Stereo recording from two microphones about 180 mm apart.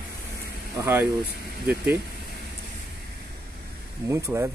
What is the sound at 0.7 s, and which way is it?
Speech, 10° right (ahead or behind).